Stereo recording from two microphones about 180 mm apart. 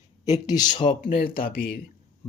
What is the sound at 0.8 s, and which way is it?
Speech, 50° left (ahead or behind).